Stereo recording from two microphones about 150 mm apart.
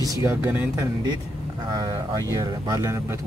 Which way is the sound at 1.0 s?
30° right (ahead or behind).